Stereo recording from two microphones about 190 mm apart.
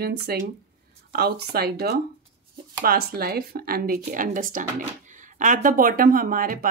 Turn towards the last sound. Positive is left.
turn(degrees=-45)  # may be behind; listen again after turning